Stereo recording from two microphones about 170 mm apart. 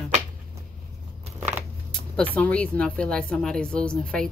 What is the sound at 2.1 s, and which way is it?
Speech, 10° left (ahead or behind).